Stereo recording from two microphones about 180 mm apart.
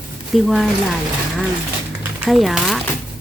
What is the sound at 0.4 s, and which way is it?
Speech, centre (ahead or behind).